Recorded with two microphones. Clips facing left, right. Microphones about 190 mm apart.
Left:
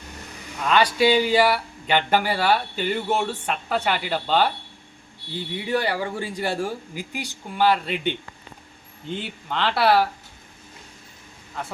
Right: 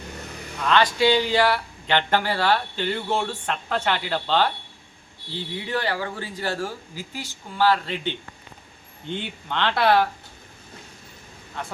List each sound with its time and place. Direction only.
0.7 s speech: 10° left (ahead or behind)
5.6 s speech: 10° left (ahead or behind)
9.0 s speech: 5° left (ahead or behind)